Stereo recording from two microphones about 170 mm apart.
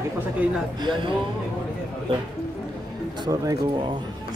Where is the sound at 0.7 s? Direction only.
30° right (ahead or behind).